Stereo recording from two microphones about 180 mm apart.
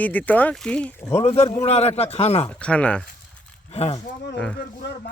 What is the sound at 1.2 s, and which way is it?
Speech, 35° left (ahead or behind).